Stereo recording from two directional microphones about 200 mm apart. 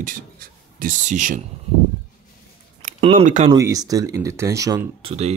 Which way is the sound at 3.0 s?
35° right (ahead or behind).